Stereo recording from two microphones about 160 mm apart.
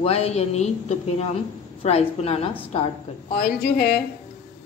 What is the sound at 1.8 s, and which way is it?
Speech, 40° left (ahead or behind).